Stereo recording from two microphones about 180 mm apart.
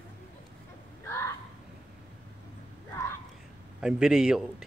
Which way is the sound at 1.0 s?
15° left (ahead or behind).